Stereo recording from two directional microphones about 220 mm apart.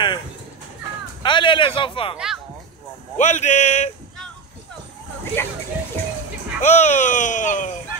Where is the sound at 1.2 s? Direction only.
20° left (ahead or behind).